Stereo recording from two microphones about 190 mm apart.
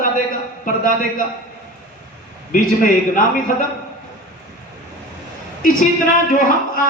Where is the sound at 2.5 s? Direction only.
45° left (ahead or behind).